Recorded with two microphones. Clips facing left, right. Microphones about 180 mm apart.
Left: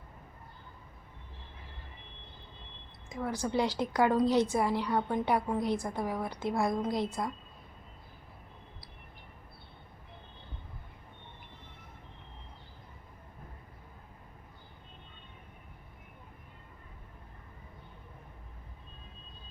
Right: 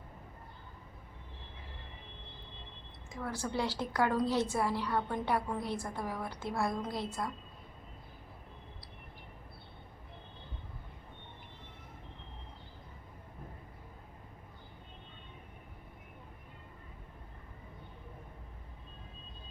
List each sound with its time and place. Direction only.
3.1 s a woman's voice: 15° left (ahead or behind)